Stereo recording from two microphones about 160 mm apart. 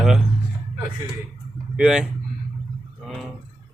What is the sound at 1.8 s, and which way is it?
Speech, 5° right (ahead or behind).